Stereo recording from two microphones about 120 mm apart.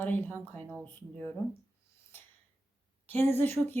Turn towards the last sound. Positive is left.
turn(degrees=20)  # may be behind; listen again after turning